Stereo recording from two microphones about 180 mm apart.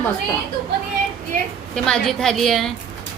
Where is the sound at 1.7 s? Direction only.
5° left (ahead or behind).